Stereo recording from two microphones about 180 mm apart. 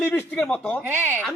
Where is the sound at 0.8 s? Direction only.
10° right (ahead or behind).